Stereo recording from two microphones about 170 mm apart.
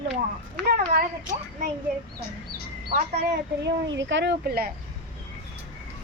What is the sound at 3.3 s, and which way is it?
A woman's voice, 90° right.